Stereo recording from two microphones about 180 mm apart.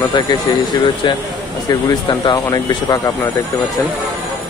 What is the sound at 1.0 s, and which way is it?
Speech, 25° left (ahead or behind).